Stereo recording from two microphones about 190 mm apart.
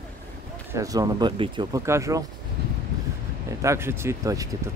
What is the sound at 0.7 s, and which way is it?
Speech, 20° right (ahead or behind).